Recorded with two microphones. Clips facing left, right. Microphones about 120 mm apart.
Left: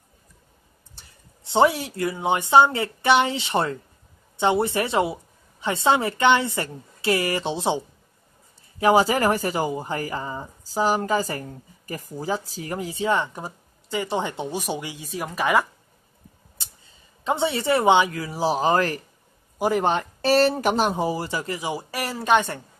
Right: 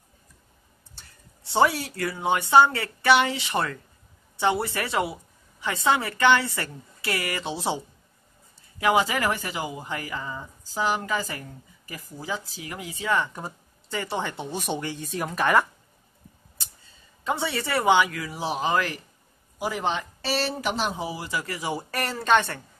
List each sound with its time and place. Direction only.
0.9 s speech: 20° left (ahead or behind); by 15.6 s 5° left (ahead or behind)
17.2 s speech: 25° left (ahead or behind); by 21.3 s 45° left (ahead or behind)
21.3 s speech: 25° left (ahead or behind)